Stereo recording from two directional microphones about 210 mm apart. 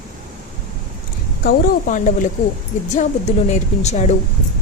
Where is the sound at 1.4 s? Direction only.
40° left (ahead or behind).